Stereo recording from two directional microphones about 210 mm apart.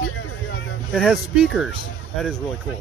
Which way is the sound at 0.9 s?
Centre (ahead or behind).